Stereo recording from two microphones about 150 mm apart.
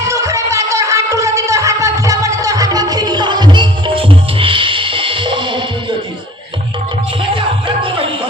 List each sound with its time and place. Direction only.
0.1 s music: 20° right (ahead or behind)
7.2 s music: 35° right (ahead or behind)